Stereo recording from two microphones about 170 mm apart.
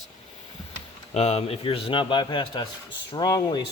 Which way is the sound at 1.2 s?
40° left (ahead or behind).